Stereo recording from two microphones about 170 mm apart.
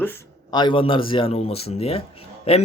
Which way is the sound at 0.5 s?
30° left (ahead or behind).